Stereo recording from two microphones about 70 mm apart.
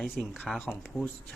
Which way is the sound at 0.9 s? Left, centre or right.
Right.